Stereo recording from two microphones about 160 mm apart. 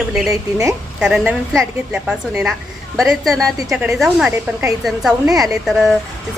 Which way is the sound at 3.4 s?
20° right (ahead or behind).